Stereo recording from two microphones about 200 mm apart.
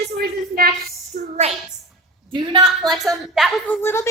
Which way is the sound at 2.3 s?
20° right (ahead or behind).